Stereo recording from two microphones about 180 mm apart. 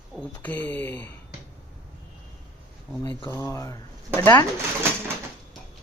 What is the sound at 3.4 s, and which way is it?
Speech, 20° left (ahead or behind).